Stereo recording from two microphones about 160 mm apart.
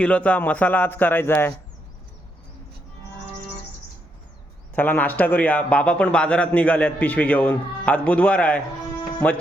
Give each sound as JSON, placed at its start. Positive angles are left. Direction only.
{"t": 0.0, "sound": "a man's voice", "side_deg": 10}
{"t": 4.7, "sound": "a man's voice", "side_deg": 10}